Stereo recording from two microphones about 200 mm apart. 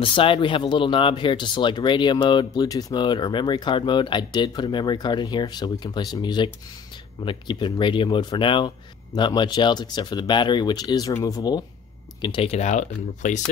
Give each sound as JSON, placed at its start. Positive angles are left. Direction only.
{"t": 0.0, "sound": "speech", "side_deg": 25}